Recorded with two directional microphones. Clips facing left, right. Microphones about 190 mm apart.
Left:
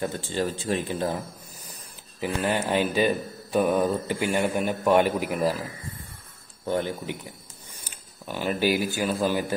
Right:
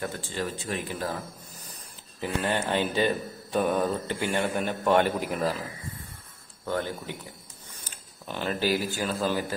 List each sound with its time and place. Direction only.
0.0 s speech: 25° left (ahead or behind)
2.1 s speech: 10° left (ahead or behind)
6.6 s speech: 20° left (ahead or behind)
7.8 s speech: 10° left (ahead or behind)